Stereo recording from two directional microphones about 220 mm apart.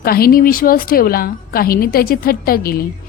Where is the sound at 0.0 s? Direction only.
45° left (ahead or behind).